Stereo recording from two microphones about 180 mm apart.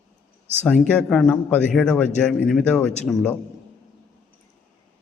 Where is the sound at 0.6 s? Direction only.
5° left (ahead or behind).